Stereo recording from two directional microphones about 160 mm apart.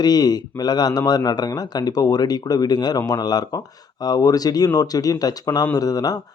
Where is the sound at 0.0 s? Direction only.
25° left (ahead or behind).